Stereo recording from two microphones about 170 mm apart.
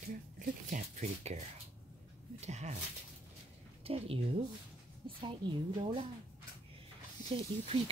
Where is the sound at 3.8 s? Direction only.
35° right (ahead or behind).